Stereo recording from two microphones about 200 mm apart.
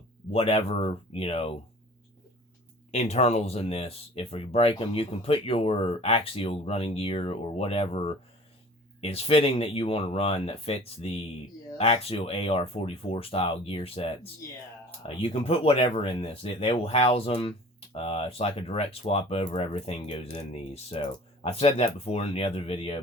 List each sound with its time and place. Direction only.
0.3 s speech: 30° left (ahead or behind)
2.9 s speech: 35° left (ahead or behind)